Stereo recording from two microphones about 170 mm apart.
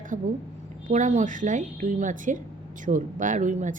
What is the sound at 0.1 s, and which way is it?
A woman's voice, 45° right (ahead or behind).